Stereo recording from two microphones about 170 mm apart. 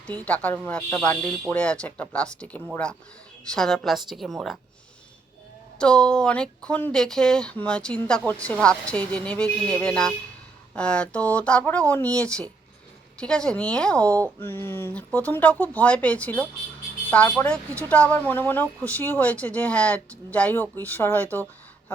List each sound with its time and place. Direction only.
0.1 s speech: 10° left (ahead or behind)
5.8 s speech: 5° left (ahead or behind)